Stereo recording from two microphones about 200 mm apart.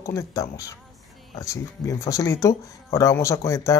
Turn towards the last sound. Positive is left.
turn(degrees=15)  # may be behind; listen again after turning